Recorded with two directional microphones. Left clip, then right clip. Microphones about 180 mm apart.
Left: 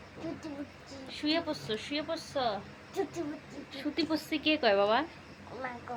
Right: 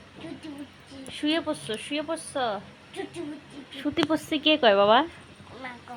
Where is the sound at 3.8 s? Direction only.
55° right (ahead or behind).